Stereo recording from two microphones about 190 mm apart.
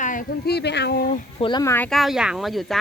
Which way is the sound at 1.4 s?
25° left (ahead or behind).